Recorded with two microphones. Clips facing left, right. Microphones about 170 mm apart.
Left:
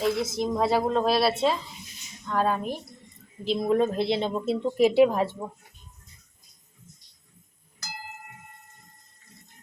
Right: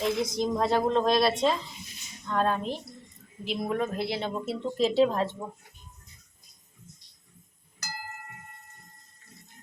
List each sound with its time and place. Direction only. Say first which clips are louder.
0.0 s a woman's voice: left 1 dB; 5° left (ahead or behind)
3.4 s a woman's voice: left 6 dB; 30° left (ahead or behind); by 5.4 s 10° left (ahead or behind)